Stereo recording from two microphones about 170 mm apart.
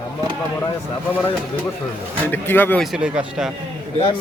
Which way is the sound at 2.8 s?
5° right (ahead or behind).